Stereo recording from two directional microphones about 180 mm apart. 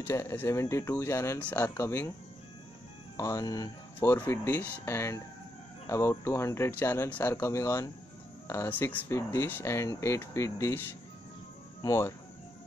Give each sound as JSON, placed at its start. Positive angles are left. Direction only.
{"t": 0.0, "sound": "speech", "side_deg": 15}
{"t": 3.2, "sound": "speech", "side_deg": 20}
{"t": 11.8, "sound": "speech", "side_deg": 15}